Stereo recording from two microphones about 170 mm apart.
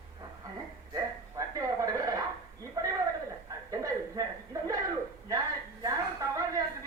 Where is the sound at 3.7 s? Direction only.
20° right (ahead or behind).